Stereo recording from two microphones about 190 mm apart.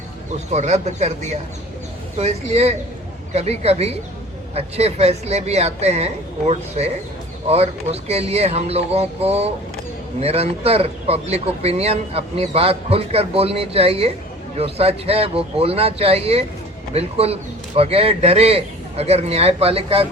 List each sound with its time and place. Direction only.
0.5 s a man's voice: 35° right (ahead or behind)